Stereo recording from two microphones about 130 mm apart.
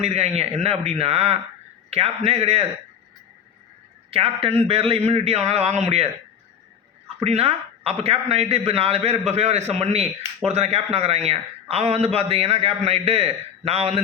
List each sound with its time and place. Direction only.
0.0 s a man's voice: 55° right (ahead or behind)
4.1 s a man's voice: 45° right (ahead or behind)
7.2 s a man's voice: 50° right (ahead or behind)